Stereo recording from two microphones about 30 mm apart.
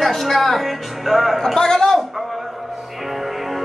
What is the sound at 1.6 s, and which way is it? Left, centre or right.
Speech, left.